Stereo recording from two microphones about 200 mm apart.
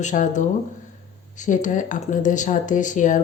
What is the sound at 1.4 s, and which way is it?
Mantra, 40° left (ahead or behind).